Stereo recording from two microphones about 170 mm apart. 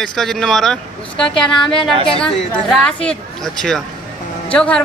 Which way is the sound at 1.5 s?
30° left (ahead or behind).